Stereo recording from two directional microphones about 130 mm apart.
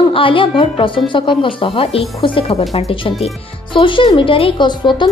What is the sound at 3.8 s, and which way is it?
Speech, 40° left (ahead or behind).